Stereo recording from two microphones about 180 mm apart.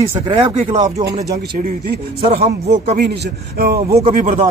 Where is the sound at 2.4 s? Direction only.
40° right (ahead or behind).